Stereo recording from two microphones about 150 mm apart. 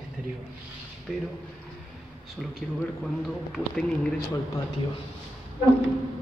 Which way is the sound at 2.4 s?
Centre (ahead or behind).